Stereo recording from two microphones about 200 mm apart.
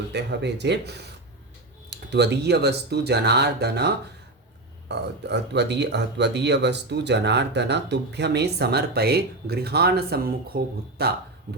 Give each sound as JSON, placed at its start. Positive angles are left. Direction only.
{"t": 0.1, "sound": "speech", "side_deg": -55}